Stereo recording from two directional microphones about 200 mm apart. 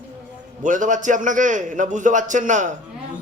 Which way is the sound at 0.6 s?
40° right (ahead or behind).